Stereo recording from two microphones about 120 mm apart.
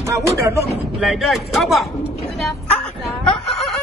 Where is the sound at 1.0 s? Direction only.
Centre (ahead or behind).